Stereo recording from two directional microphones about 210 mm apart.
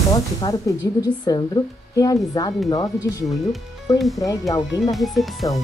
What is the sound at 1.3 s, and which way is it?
Speech, 20° left (ahead or behind).